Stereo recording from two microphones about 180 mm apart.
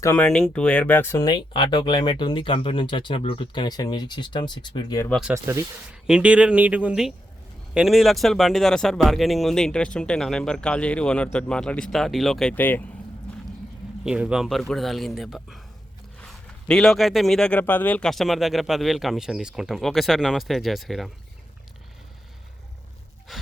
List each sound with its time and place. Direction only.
0.0 s speech: 15° left (ahead or behind)
5.0 s speech: centre (ahead or behind)
5.3 s speech: 15° right (ahead or behind); by 12.8 s 10° left (ahead or behind)
14.0 s speech: 5° right (ahead or behind)
23.3 s gasp: centre (ahead or behind)